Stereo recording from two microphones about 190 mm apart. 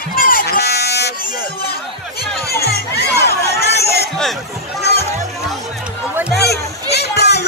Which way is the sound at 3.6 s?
60° left (ahead or behind).